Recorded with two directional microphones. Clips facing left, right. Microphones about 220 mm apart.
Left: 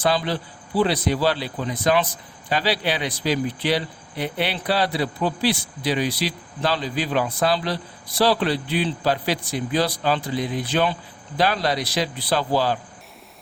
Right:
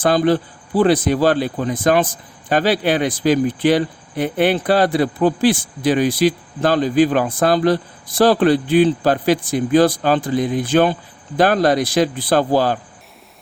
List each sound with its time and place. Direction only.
0.0 s speech: 50° right (ahead or behind)